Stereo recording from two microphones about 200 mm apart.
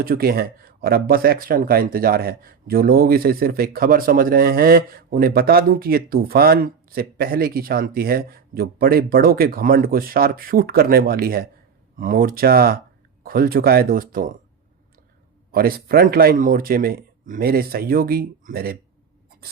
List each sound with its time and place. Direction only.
0.0 s speech: 50° right (ahead or behind)
15.5 s speech: 45° right (ahead or behind)